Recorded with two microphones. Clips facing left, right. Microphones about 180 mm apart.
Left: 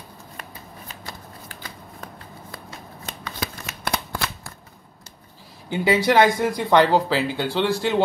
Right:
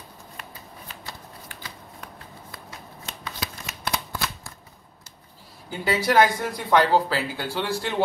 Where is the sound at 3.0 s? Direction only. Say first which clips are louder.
Left 3 dB; 50° left (ahead or behind).